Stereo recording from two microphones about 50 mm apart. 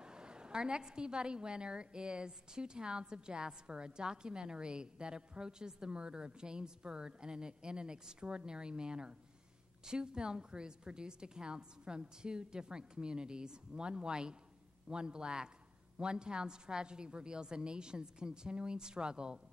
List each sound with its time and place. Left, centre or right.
0.0 s a woman's voice: centre